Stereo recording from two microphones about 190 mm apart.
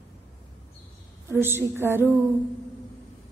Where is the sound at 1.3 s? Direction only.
10° right (ahead or behind).